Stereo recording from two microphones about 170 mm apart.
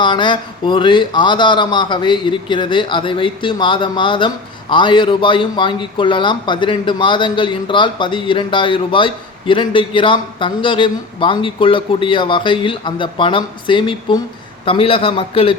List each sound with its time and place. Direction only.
0.0 s a man's voice: 30° left (ahead or behind)